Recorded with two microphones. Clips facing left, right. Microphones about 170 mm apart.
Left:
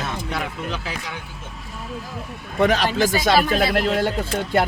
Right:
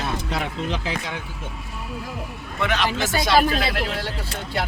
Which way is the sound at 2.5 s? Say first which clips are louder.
Left 5 dB; 40° left (ahead or behind).